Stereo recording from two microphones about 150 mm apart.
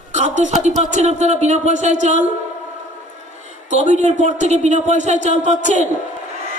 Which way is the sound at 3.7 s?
55° right (ahead or behind).